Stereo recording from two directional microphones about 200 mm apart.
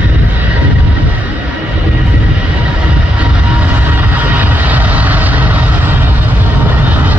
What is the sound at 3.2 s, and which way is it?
Vehicle, 5° right (ahead or behind).